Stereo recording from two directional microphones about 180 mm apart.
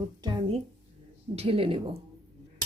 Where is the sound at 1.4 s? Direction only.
30° right (ahead or behind).